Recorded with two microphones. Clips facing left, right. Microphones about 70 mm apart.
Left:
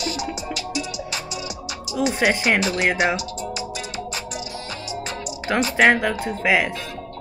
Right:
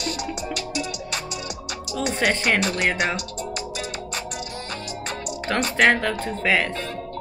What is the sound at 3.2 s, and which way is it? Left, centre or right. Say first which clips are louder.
Music: left 2 dB; right.